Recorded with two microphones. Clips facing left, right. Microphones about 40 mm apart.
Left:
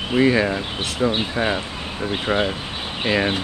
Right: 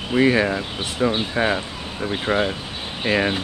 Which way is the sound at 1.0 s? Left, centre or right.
Centre.